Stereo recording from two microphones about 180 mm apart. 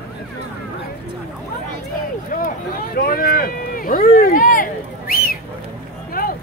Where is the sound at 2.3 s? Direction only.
50° left (ahead or behind).